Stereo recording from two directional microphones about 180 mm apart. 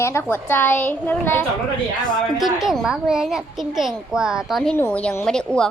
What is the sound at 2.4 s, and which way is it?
A child's voice, centre (ahead or behind).